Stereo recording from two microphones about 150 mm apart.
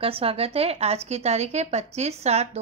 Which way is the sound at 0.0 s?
40° right (ahead or behind).